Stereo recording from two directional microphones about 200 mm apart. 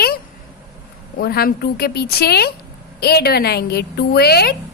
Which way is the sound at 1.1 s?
50° left (ahead or behind).